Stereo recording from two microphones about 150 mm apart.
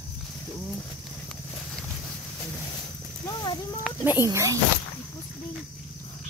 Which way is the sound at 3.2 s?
30° left (ahead or behind).